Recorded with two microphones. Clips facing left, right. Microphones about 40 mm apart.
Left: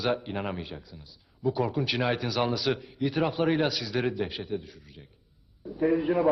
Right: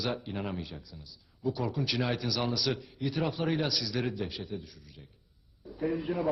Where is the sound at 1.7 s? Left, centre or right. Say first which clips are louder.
Left 4 dB; left.